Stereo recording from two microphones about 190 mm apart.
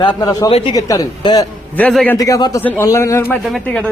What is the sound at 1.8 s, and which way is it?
Speech, 5° left (ahead or behind).